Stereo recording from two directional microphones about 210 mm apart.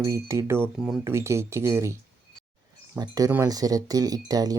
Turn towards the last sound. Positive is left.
turn(degrees=-20)  # may be behind; listen again after turning